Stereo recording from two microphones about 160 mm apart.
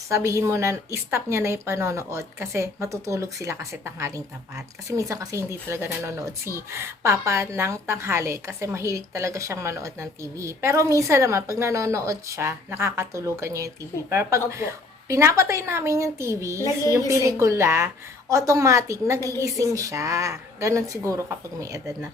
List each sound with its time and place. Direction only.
0.1 s a woman's voice: 15° right (ahead or behind)